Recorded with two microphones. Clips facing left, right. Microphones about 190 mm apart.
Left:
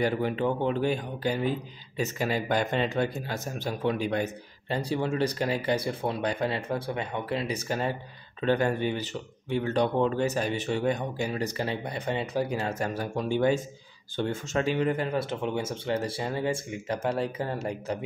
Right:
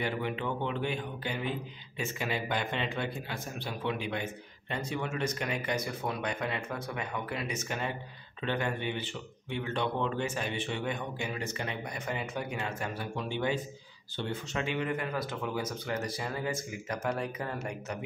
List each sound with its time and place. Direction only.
0.0 s speech: 40° left (ahead or behind)